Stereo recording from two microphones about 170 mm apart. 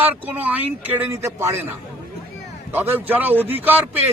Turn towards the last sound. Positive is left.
turn(degrees=-10)  # may be behind; listen again after turning